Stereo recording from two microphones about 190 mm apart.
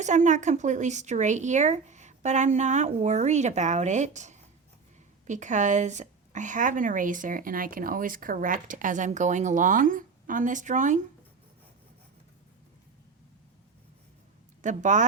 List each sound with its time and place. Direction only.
0.0 s a woman's voice: 40° right (ahead or behind)
14.6 s speech: 40° right (ahead or behind)